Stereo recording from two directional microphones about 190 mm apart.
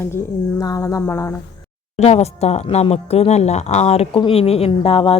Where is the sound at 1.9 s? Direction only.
35° left (ahead or behind).